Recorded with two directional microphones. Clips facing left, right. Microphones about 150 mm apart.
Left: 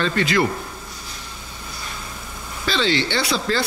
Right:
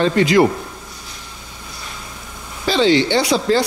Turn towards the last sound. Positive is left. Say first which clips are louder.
# right 6 dB
turn(degrees=-15)  # may be behind; listen again after turning